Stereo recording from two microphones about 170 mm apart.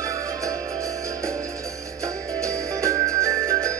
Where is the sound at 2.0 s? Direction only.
20° right (ahead or behind).